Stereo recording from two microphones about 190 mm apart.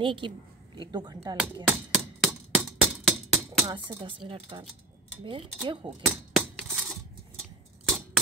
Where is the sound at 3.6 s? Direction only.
25° right (ahead or behind).